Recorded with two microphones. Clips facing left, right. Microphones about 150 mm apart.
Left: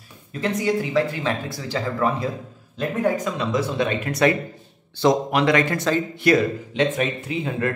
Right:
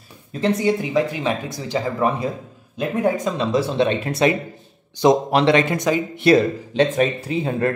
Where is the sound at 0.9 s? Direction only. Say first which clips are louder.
Right 2 dB; 15° right (ahead or behind).